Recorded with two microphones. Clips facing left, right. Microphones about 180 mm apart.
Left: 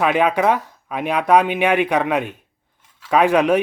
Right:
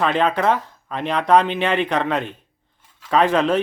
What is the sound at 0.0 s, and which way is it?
Speech, 10° left (ahead or behind).